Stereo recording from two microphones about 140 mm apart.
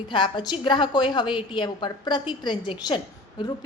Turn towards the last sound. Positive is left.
turn(degrees=30)  # may be behind; listen again after turning